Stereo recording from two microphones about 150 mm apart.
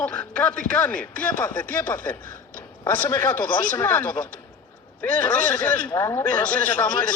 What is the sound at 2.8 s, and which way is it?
A man's voice, 15° left (ahead or behind).